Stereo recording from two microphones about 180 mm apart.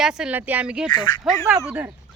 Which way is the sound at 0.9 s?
25° left (ahead or behind).